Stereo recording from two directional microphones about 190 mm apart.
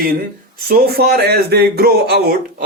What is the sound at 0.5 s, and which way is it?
Speech, 50° right (ahead or behind).